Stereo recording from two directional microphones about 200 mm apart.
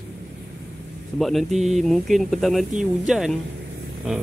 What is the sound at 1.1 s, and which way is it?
Speech, centre (ahead or behind).